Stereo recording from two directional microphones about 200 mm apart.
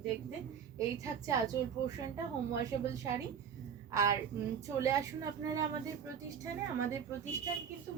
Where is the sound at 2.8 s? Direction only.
15° right (ahead or behind).